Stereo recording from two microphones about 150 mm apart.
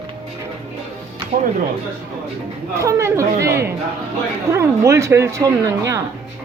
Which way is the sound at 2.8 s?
20° right (ahead or behind).